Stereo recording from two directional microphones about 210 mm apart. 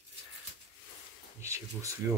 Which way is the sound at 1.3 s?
15° right (ahead or behind).